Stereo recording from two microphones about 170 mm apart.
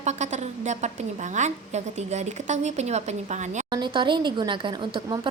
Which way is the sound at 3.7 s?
25° right (ahead or behind).